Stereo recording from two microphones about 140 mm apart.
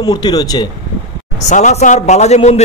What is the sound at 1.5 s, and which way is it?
A man's voice, 60° left (ahead or behind).